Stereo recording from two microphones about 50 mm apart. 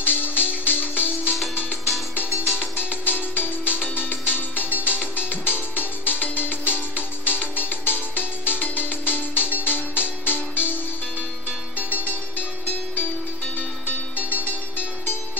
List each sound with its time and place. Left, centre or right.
0.0 s music: left
2.6 s music: left